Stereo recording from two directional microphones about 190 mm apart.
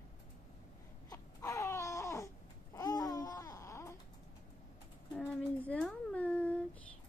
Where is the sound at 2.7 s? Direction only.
20° left (ahead or behind).